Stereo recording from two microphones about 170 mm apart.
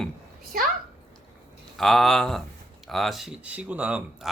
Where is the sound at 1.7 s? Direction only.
Centre (ahead or behind).